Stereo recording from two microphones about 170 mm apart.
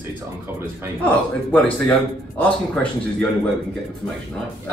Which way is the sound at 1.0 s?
10° left (ahead or behind).